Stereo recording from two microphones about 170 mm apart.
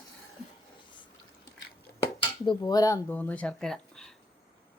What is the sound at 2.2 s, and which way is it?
Speech, 25° left (ahead or behind).